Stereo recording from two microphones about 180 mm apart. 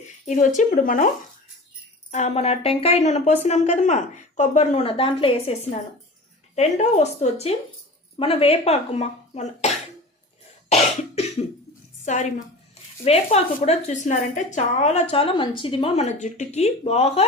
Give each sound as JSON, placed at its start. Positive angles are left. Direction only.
{"t": 0.3, "sound": "a woman's voice", "side_deg": 40}
{"t": 10.7, "sound": "cough", "side_deg": 35}
{"t": 12.0, "sound": "a woman's voice", "side_deg": 45}